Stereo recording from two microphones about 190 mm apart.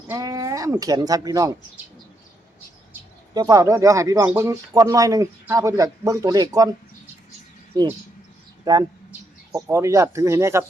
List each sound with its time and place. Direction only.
0.1 s speech: 20° right (ahead or behind)
3.3 s speech: 20° right (ahead or behind)
8.7 s speech: 20° right (ahead or behind)